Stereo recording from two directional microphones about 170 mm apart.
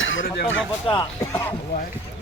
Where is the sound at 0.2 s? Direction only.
90° left.